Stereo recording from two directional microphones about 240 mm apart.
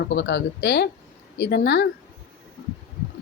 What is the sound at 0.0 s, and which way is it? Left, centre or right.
Speech, left.